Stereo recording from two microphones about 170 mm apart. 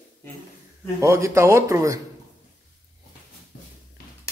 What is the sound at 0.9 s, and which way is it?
Speech, 15° right (ahead or behind).